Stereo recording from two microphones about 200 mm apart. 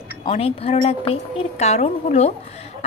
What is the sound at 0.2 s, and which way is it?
A woman's voice, 30° left (ahead or behind).